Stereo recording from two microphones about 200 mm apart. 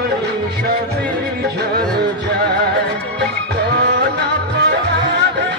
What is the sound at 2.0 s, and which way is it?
Music, 55° right (ahead or behind).